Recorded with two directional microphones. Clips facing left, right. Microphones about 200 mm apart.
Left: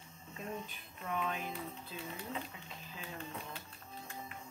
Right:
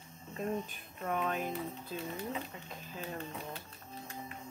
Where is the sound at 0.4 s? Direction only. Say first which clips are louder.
Right 7 dB; 45° right (ahead or behind).